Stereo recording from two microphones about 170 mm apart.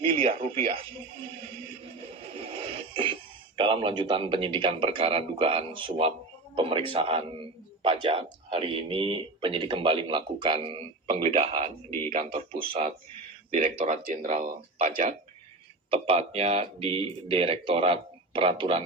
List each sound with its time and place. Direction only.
0.0 s a man's voice: 30° right (ahead or behind)
1.8 s music: 35° right (ahead or behind)
3.6 s a man's voice: 30° right (ahead or behind); by 15.0 s 50° right (ahead or behind)
15.9 s a man's voice: 35° right (ahead or behind)